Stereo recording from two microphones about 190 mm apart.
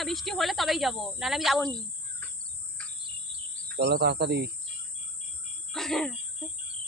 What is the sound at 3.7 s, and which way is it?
Speech, 60° right (ahead or behind).